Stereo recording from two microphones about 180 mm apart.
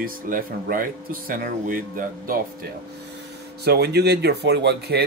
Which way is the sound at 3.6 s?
65° right (ahead or behind).